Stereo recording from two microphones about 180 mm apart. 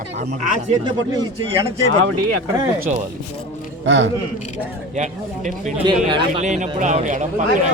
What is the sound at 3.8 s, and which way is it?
Speech, 90° right.